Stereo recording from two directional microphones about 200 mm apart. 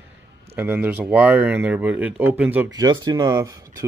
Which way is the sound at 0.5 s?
10° right (ahead or behind).